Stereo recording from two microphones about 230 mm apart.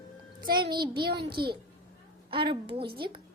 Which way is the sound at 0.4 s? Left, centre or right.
Right.